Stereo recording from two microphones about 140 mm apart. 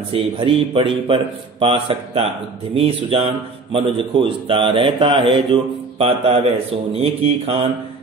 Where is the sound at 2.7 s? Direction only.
45° right (ahead or behind).